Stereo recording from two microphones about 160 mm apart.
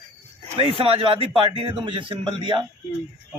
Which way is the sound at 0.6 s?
35° right (ahead or behind).